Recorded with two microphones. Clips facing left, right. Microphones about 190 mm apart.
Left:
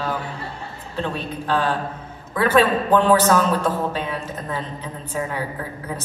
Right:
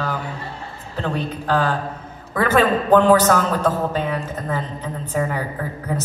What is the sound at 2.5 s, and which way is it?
Speech, 45° right (ahead or behind).